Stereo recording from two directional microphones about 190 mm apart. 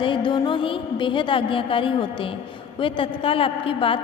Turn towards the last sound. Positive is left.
turn(degrees=30)  # may be behind; listen again after turning